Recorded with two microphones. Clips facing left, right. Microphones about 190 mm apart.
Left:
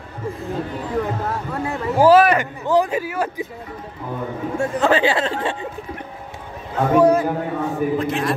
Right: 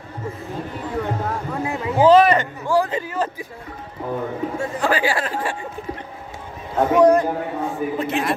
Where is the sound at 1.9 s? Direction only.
5° left (ahead or behind).